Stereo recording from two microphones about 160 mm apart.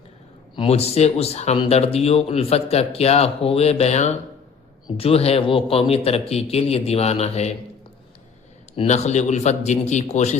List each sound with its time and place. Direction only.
0.5 s speech: 35° left (ahead or behind)
8.7 s a man's voice: 40° left (ahead or behind)